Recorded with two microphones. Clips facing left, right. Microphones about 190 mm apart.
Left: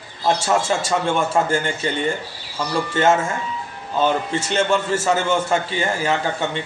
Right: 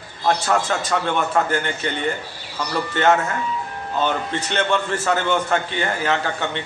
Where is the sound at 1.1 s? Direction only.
10° left (ahead or behind).